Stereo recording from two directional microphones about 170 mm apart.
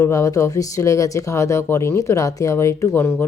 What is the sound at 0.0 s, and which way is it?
A woman's voice, 20° left (ahead or behind).